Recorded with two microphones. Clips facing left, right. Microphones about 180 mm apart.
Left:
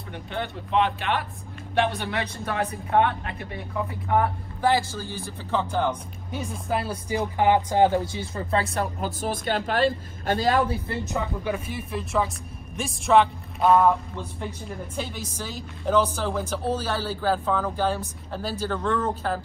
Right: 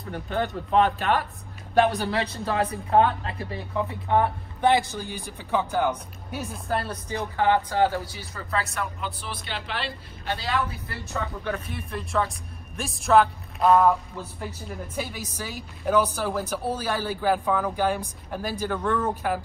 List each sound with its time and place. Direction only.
0.1 s a man's voice: 40° right (ahead or behind); by 8.8 s 25° left (ahead or behind)
9.0 s speech: 45° left (ahead or behind)
10.7 s speech: 20° left (ahead or behind)
11.4 s speech: 5° left (ahead or behind)